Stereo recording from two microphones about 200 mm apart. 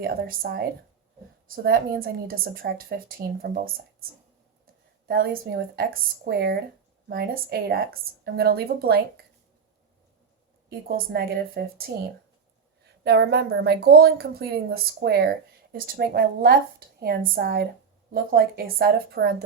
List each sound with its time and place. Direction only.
0.0 s a woman's voice: 45° right (ahead or behind)
1.6 s a woman's voice: 50° right (ahead or behind)
10.7 s a woman's voice: 50° right (ahead or behind)
12.8 s a woman's voice: 55° right (ahead or behind)